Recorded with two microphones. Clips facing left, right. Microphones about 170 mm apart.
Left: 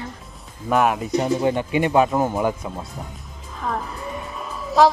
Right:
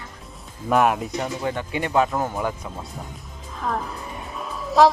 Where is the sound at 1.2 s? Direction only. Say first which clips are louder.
Left 7 dB; 20° left (ahead or behind).